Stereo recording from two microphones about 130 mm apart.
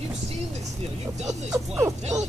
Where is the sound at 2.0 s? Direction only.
60° right (ahead or behind).